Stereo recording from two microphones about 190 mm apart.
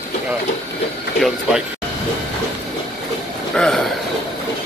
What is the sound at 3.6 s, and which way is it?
Speech, 5° left (ahead or behind).